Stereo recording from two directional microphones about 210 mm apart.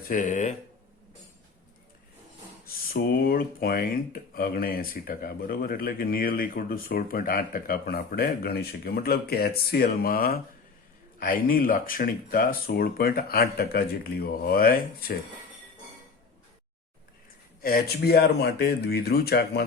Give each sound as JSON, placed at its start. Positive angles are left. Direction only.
{"t": 0.1, "sound": "speech", "side_deg": 35}
{"t": 2.6, "sound": "speech", "side_deg": 45}
{"t": 17.6, "sound": "speech", "side_deg": 45}